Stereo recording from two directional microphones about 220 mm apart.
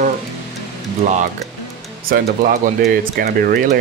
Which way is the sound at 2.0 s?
40° right (ahead or behind).